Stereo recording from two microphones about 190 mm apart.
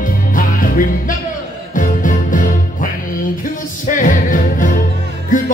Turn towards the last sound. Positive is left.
turn(degrees=45)  # may be behind; listen again after turning